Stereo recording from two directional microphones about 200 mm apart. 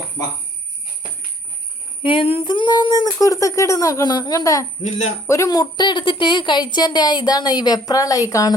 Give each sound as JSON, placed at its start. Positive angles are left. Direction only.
{"t": 2.0, "sound": "a woman's voice", "side_deg": 30}